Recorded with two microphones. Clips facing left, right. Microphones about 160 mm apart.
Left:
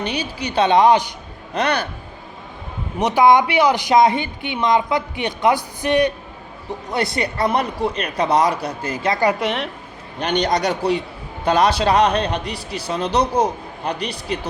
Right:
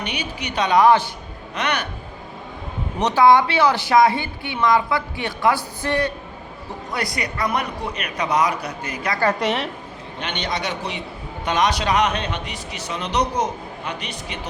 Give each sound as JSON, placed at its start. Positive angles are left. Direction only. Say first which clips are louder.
{"t": 0.0, "sound": "a woman's voice", "louder": "left 4 dB", "side_deg": 30}
{"t": 1.5, "sound": "speech", "louder": "left 4 dB", "side_deg": 30}
{"t": 3.0, "sound": "speech", "louder": "left 1 dB", "side_deg": 15}
{"t": 6.9, "sound": "speech", "louder": "left 5 dB", "side_deg": 25}
{"t": 9.4, "sound": "a woman's voice", "louder": "even", "side_deg": 0}
{"t": 10.2, "sound": "speech", "louder": "left 8 dB", "side_deg": 40}